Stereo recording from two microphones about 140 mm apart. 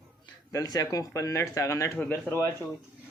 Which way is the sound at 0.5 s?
25° left (ahead or behind).